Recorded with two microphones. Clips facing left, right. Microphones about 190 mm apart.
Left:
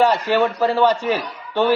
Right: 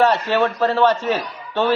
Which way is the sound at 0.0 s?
10° left (ahead or behind).